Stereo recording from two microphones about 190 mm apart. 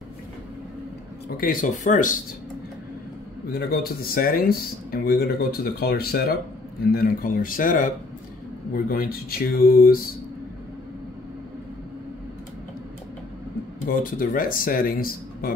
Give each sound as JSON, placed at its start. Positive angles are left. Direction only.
{"t": 1.3, "sound": "speech", "side_deg": 50}
{"t": 3.5, "sound": "speech", "side_deg": 55}
{"t": 13.8, "sound": "speech", "side_deg": 45}